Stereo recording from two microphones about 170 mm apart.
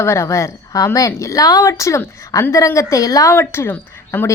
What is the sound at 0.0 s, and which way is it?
A woman's voice, 15° left (ahead or behind).